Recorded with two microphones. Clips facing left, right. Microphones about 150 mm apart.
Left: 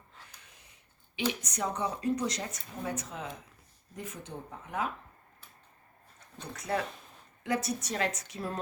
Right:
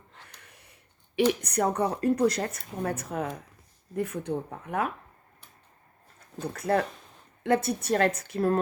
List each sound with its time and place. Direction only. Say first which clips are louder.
0.3 s speech: right 4 dB; 60° right (ahead or behind)
6.4 s a woman's voice: right 7 dB; 55° right (ahead or behind)